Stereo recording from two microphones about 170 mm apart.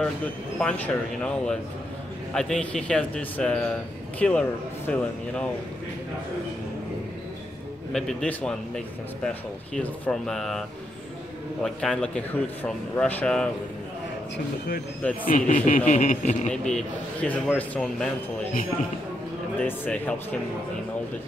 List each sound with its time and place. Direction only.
0.6 s speech: 5° left (ahead or behind)
7.9 s speech: 5° left (ahead or behind)
11.6 s speech: 5° left (ahead or behind)
15.2 s a man's voice: 50° left (ahead or behind)
16.6 s speech: 5° left (ahead or behind)
19.6 s speech: 10° left (ahead or behind)